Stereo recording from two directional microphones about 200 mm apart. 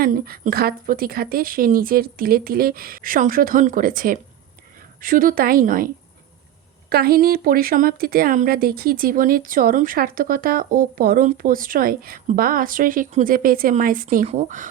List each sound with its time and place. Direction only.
0.0 s speech: 45° right (ahead or behind)
6.9 s speech: 50° right (ahead or behind)